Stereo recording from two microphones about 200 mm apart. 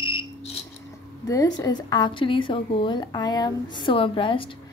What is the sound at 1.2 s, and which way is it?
A woman's voice, 15° left (ahead or behind).